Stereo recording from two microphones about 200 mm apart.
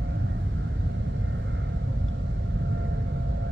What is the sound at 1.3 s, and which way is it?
Vehicle, 70° right (ahead or behind).